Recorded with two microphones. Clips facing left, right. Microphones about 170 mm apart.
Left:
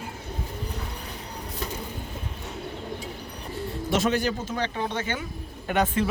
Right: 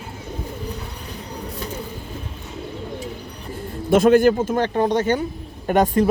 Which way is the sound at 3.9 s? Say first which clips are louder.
Right 11 dB; 50° right (ahead or behind).